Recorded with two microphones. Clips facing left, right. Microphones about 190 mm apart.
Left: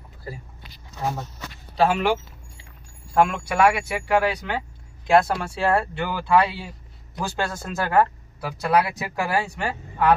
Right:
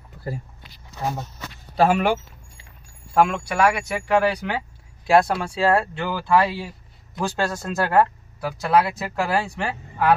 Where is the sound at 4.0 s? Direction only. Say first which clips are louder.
Right 1 dB; 5° left (ahead or behind).